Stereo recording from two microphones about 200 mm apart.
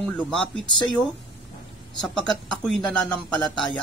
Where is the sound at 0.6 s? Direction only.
20° left (ahead or behind).